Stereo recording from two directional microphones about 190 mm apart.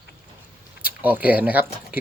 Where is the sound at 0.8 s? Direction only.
10° right (ahead or behind).